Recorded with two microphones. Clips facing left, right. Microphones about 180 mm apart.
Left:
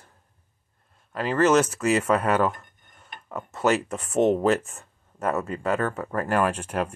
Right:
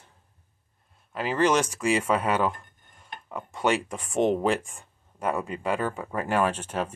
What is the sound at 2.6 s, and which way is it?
Dishes, 10° right (ahead or behind).